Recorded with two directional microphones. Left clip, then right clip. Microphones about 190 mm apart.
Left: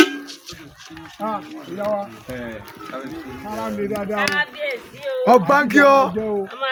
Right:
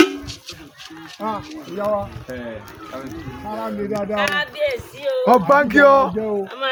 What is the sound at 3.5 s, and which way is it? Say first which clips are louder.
Speech: right 1 dB; 35° left (ahead or behind).